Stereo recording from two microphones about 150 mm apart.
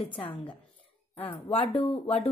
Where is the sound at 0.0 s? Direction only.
35° left (ahead or behind).